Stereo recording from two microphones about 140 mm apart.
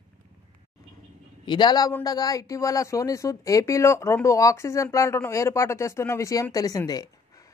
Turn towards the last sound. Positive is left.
turn(degrees=25)  # may be behind; listen again after turning